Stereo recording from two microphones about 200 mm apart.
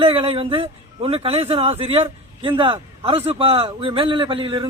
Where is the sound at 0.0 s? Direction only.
30° right (ahead or behind).